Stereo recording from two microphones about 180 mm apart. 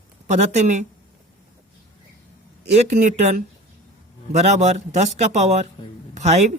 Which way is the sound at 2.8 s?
40° right (ahead or behind).